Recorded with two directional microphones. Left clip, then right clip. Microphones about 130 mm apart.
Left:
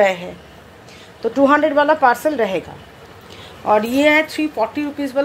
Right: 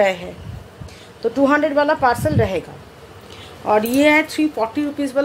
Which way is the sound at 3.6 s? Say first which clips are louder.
Left 1 dB; centre (ahead or behind).